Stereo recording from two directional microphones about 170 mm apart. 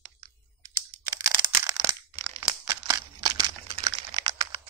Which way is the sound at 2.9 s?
25° right (ahead or behind).